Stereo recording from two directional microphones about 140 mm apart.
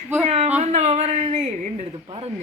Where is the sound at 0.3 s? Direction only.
50° right (ahead or behind).